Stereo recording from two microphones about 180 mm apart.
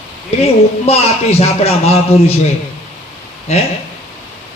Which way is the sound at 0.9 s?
35° left (ahead or behind).